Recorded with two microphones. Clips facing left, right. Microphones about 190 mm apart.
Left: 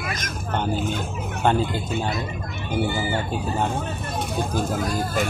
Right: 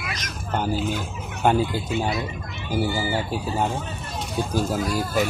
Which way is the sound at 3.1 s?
5° right (ahead or behind).